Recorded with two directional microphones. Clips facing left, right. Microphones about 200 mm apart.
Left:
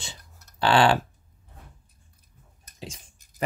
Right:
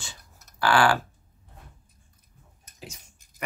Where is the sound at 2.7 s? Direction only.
30° left (ahead or behind).